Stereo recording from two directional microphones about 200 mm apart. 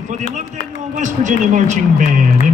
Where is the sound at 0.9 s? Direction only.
40° right (ahead or behind).